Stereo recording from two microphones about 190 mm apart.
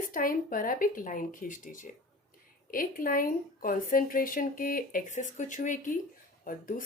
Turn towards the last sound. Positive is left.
turn(degrees=45)  # may be behind; listen again after turning